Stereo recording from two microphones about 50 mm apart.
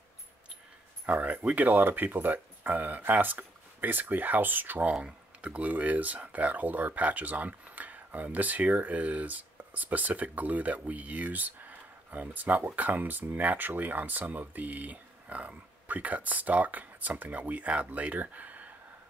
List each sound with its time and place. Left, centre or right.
1.0 s speech: right